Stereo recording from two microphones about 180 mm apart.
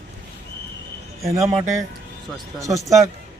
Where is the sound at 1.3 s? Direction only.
20° right (ahead or behind).